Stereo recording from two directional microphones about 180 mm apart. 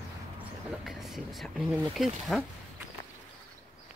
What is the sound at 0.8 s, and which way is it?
Speech, centre (ahead or behind).